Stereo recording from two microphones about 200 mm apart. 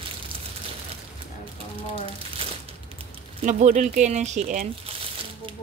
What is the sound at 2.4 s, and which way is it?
Crumpling, 25° right (ahead or behind).